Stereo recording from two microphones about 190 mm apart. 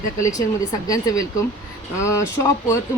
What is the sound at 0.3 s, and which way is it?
Speech, 20° left (ahead or behind).